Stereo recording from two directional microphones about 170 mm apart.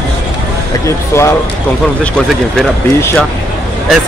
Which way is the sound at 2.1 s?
Centre (ahead or behind).